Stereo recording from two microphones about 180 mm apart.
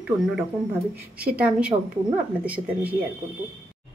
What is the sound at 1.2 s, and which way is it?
Speech, 5° right (ahead or behind).